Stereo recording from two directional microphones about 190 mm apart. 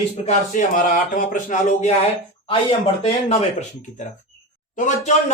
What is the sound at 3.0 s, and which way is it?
Speech, 35° left (ahead or behind).